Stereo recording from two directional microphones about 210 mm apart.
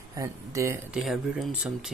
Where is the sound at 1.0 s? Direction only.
Centre (ahead or behind).